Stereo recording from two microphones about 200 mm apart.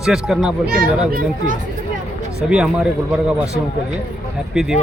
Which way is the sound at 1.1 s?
45° right (ahead or behind).